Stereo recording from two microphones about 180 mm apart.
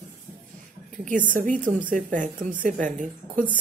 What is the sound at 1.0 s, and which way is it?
Speech, 45° right (ahead or behind).